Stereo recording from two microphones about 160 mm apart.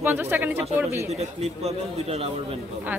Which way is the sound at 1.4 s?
40° right (ahead or behind).